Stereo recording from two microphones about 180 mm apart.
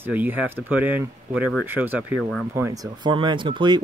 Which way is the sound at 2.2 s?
5° left (ahead or behind).